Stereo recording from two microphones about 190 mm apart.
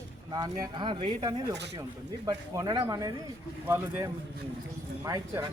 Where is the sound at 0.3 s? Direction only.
20° right (ahead or behind).